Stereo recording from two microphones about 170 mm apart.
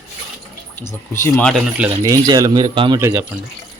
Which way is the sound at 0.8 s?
15° left (ahead or behind).